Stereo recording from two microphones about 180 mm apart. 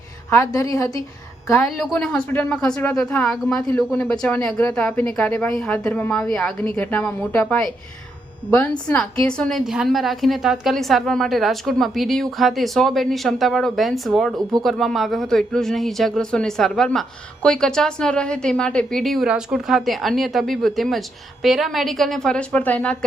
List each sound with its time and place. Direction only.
0.3 s a woman's voice: 15° left (ahead or behind)
1.6 s speech: centre (ahead or behind)